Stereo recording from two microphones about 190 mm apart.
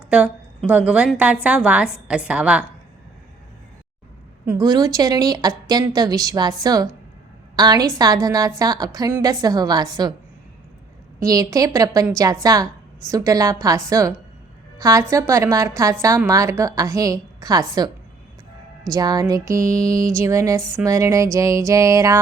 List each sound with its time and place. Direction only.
0.1 s a woman's voice: 5° right (ahead or behind)
4.4 s a woman's voice: 20° right (ahead or behind)
11.2 s a woman's voice: 20° right (ahead or behind)